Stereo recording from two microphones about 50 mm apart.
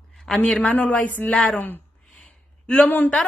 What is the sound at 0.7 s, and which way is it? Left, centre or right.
Speech, left.